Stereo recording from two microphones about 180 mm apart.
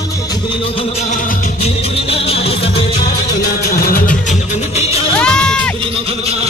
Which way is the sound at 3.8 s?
50° left (ahead or behind).